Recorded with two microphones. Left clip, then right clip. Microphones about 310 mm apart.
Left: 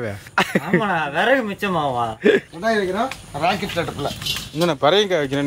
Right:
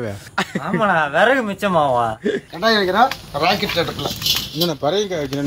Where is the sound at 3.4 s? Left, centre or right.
Centre.